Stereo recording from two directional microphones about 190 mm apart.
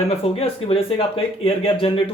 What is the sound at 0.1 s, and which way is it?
Speech, 30° left (ahead or behind).